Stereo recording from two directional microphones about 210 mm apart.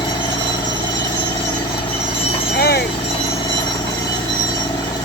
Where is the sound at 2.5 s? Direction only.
50° left (ahead or behind).